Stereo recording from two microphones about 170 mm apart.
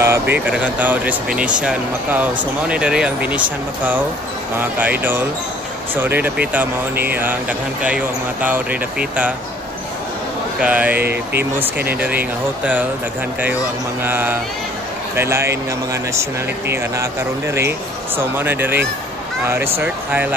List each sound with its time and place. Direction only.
0.0 s speech: 15° right (ahead or behind)
10.6 s speech: 10° right (ahead or behind)
11.0 s speech: 70° right (ahead or behind)
12.0 s speech: 10° right (ahead or behind)
14.0 s speech: 10° right (ahead or behind)